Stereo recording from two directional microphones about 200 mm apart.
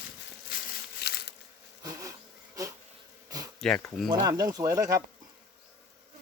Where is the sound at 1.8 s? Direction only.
15° right (ahead or behind).